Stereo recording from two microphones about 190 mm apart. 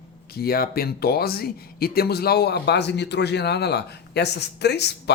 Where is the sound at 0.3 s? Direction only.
55° left (ahead or behind).